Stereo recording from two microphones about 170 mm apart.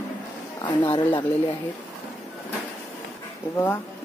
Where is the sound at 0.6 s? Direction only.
30° left (ahead or behind).